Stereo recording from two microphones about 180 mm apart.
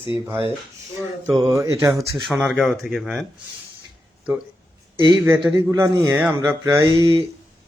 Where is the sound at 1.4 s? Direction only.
15° right (ahead or behind).